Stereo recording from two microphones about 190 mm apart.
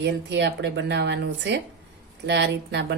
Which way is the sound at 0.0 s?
65° right (ahead or behind).